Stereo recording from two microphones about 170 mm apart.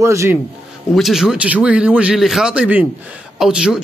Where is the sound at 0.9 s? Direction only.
Centre (ahead or behind).